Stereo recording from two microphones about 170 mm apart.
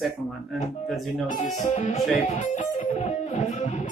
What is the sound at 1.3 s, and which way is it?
Speech, 45° left (ahead or behind).